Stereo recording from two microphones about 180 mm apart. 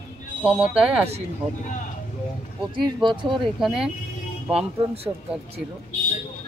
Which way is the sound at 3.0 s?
25° right (ahead or behind).